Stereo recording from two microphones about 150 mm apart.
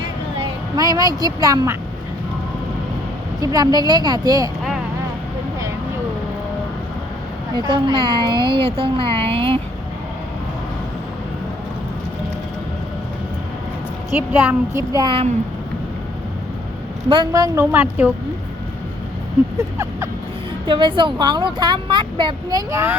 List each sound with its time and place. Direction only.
0.8 s a woman's voice: 25° right (ahead or behind)
3.4 s a woman's voice: 25° right (ahead or behind)
7.5 s a woman's voice: 30° right (ahead or behind)
14.2 s child singing: 10° right (ahead or behind)
15.0 s a woman's voice: 35° right (ahead or behind)
17.1 s a woman's voice: 30° right (ahead or behind); by 18.1 s 10° right (ahead or behind)
20.7 s a woman's voice: 30° right (ahead or behind)